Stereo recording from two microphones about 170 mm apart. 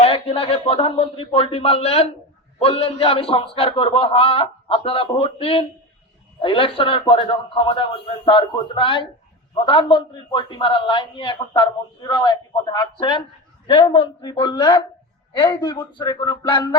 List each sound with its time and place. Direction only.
0.0 s a man's voice: 35° left (ahead or behind)